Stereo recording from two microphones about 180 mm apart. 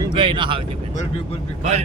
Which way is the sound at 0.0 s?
25° right (ahead or behind).